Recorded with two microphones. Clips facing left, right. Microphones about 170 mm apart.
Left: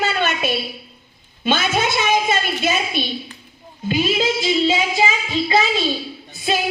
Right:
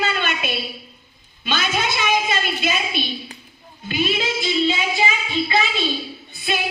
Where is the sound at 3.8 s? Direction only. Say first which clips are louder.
Left 4 dB; 35° left (ahead or behind).